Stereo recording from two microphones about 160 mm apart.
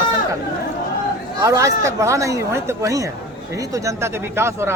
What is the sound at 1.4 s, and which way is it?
Speech, 20° right (ahead or behind).